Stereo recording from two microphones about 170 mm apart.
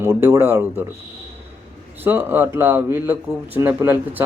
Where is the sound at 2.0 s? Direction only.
10° right (ahead or behind).